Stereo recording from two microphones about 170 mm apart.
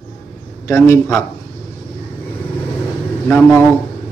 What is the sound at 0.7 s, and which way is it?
Speech, 15° left (ahead or behind).